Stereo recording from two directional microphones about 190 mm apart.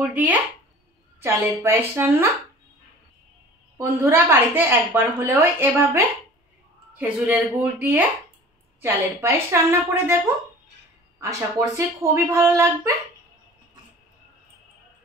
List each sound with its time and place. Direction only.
0.0 s a sound: 10° right (ahead or behind)
1.2 s a woman's voice: 15° right (ahead or behind)
3.7 s a woman's voice: 15° right (ahead or behind)
7.0 s a woman's voice: 10° right (ahead or behind)